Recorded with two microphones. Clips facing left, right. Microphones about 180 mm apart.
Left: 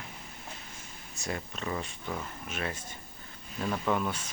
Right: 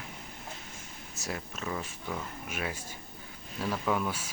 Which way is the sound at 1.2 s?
Centre (ahead or behind).